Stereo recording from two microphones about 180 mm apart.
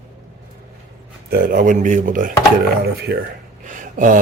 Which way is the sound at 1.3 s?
50° right (ahead or behind).